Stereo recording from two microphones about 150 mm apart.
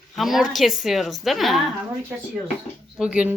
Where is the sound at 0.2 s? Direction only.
Centre (ahead or behind).